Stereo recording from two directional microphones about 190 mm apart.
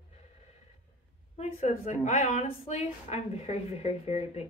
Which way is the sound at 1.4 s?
35° left (ahead or behind).